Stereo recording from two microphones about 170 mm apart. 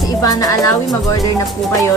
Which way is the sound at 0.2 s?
20° left (ahead or behind).